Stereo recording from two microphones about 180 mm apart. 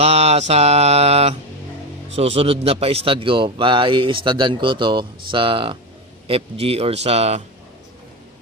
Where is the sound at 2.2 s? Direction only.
35° right (ahead or behind).